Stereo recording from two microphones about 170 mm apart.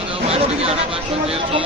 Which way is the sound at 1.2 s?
35° right (ahead or behind).